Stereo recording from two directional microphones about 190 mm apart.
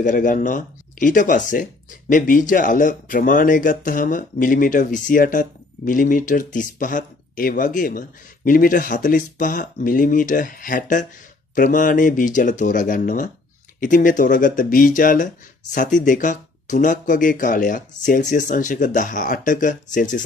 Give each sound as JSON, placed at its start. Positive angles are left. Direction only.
{"t": 0.0, "sound": "speech", "side_deg": 45}